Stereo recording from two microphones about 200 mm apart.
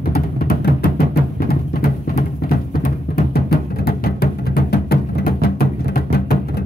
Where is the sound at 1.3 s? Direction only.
50° left (ahead or behind).